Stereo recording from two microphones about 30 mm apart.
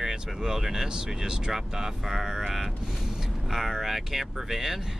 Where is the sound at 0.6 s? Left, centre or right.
Centre.